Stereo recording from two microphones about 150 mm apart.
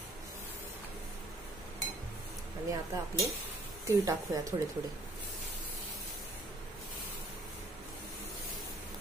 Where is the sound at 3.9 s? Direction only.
20° right (ahead or behind).